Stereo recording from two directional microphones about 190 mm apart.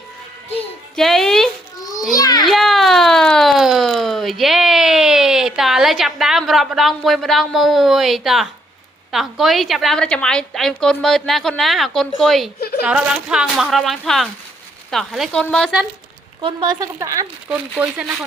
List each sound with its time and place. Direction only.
0.9 s music: centre (ahead or behind)
2.1 s children playing: 20° left (ahead or behind)
2.5 s a sound: centre (ahead or behind)
9.1 s a woman's voice: centre (ahead or behind)
12.5 s a woman's voice: 55° left (ahead or behind)
12.8 s a woman's voice: 5° right (ahead or behind)
16.4 s speech: 25° right (ahead or behind); by 18.0 s 10° right (ahead or behind)